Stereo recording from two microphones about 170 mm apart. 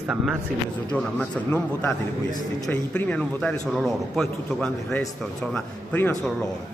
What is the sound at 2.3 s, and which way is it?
Speech, 20° left (ahead or behind).